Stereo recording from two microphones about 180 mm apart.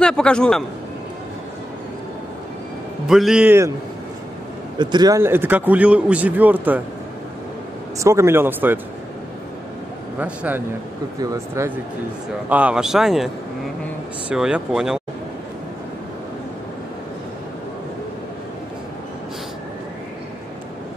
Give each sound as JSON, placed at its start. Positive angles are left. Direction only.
{"t": 0.0, "sound": "speech", "side_deg": 5}
{"t": 3.1, "sound": "speech", "side_deg": 0}
{"t": 4.7, "sound": "speech", "side_deg": -25}
{"t": 8.0, "sound": "speech", "side_deg": -15}
{"t": 10.1, "sound": "speech", "side_deg": -10}
{"t": 14.3, "sound": "speech", "side_deg": -5}